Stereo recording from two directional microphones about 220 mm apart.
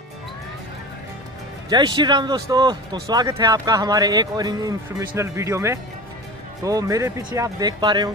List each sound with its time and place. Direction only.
1.7 s speech: 20° right (ahead or behind)